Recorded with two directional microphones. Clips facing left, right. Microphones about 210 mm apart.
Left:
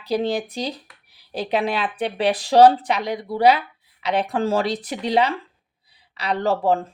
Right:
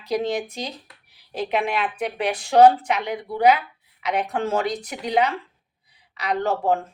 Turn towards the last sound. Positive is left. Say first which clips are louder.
# left 2 dB
turn(degrees=35)  # may be behind; listen again after turning